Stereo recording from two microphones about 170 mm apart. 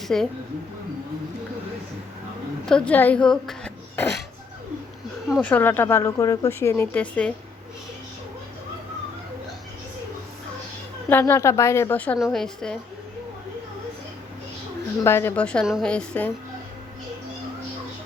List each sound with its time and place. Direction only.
0.1 s speech: 5° left (ahead or behind)
2.6 s speech: 5° left (ahead or behind)
5.4 s a woman's voice: 10° left (ahead or behind)
11.1 s a woman's voice: 15° left (ahead or behind)
15.0 s a woman's voice: 15° left (ahead or behind)